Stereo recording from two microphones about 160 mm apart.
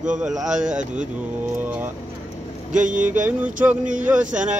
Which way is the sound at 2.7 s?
55° right (ahead or behind).